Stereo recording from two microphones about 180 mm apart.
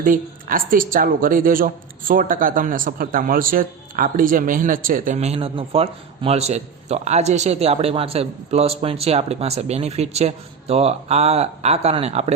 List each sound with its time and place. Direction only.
0.0 s a woman's voice: 50° right (ahead or behind); by 12.3 s 35° right (ahead or behind)